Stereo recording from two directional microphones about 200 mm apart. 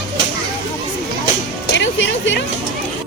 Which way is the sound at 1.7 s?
65° left (ahead or behind).